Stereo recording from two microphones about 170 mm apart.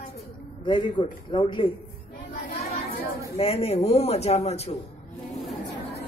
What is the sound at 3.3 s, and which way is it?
A man's voice, 35° left (ahead or behind).